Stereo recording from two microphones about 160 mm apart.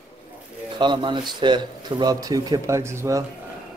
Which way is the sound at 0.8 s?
30° right (ahead or behind).